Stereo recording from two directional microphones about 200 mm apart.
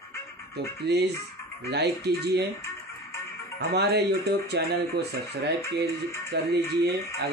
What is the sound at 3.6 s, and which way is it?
Speech, 55° right (ahead or behind).